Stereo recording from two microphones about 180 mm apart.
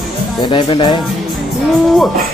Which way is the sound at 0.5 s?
25° left (ahead or behind).